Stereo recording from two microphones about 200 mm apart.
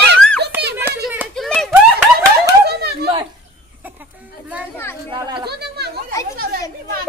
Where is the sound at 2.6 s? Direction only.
55° right (ahead or behind).